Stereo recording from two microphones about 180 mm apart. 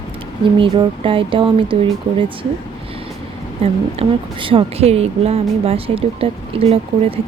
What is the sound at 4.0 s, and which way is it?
A woman's voice, 30° right (ahead or behind).